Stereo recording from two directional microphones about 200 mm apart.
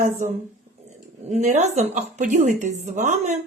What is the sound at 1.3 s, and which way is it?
Speech, 35° right (ahead or behind).